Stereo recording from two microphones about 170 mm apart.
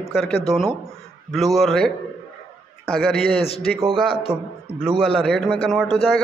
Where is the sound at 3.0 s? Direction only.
5° left (ahead or behind).